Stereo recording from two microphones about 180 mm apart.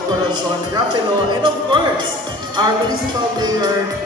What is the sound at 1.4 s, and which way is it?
Speech, 25° right (ahead or behind).